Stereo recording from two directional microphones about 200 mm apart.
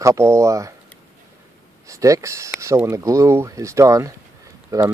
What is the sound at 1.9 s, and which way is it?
Speech, 15° right (ahead or behind).